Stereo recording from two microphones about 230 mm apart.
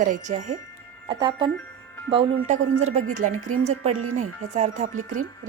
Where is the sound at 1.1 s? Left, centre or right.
Centre.